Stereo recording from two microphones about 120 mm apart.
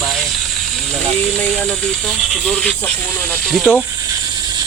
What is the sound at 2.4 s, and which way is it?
Speech, 10° left (ahead or behind).